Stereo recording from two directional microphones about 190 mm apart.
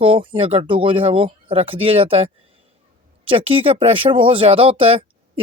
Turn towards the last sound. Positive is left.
turn(degrees=-30)  # may be behind; listen again after turning